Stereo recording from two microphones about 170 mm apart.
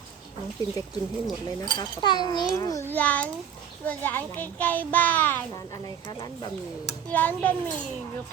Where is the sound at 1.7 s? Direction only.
25° left (ahead or behind).